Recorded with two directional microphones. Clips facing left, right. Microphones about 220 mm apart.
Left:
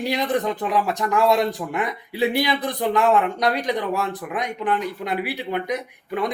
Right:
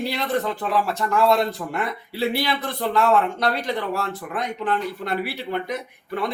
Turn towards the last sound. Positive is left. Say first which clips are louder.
# left 2 dB
turn(degrees=15)  # may be behind; listen again after turning